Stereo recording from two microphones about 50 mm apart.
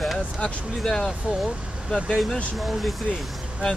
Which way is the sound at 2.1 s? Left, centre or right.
Centre.